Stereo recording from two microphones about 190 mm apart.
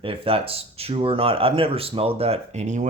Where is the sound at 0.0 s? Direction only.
30° right (ahead or behind).